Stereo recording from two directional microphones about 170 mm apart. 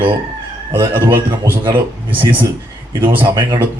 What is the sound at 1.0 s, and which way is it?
Speech, 25° right (ahead or behind).